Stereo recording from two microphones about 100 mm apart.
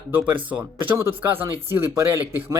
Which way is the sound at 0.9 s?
30° right (ahead or behind).